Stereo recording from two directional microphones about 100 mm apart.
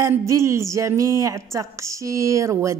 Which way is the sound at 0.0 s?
30° right (ahead or behind).